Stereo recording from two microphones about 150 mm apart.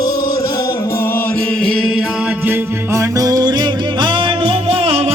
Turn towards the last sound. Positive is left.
turn(degrees=-40)  # may be behind; listen again after turning